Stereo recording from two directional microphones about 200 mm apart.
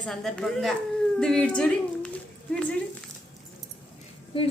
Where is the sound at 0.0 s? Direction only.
Centre (ahead or behind).